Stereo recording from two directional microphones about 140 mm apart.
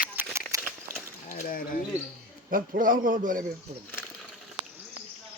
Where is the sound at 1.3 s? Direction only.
85° left.